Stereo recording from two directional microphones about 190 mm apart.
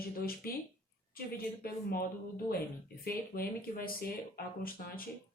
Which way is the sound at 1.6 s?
55° left (ahead or behind).